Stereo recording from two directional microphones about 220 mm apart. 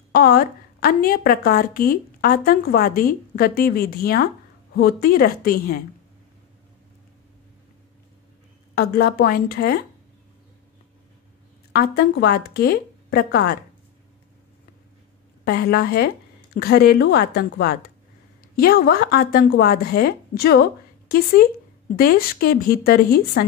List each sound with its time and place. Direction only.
0.1 s a woman's voice: 45° left (ahead or behind)
8.7 s a woman's voice: 45° left (ahead or behind)
11.7 s a woman's voice: 45° left (ahead or behind)
15.4 s a woman's voice: 45° left (ahead or behind)